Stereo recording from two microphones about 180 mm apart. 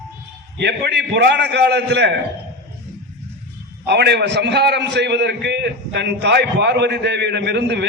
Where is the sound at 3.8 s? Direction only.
70° right (ahead or behind).